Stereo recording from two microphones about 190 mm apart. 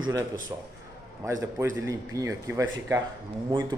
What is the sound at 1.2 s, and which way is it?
Speech, 15° right (ahead or behind).